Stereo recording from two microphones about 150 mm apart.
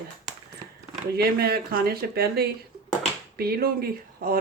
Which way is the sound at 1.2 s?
90° right.